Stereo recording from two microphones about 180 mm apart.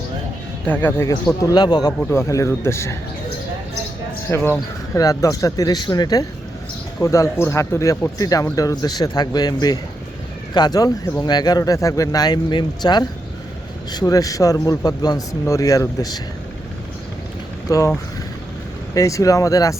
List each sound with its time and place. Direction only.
0.6 s speech: 10° left (ahead or behind)
4.3 s speech: 15° left (ahead or behind)
17.7 s speech: 15° left (ahead or behind)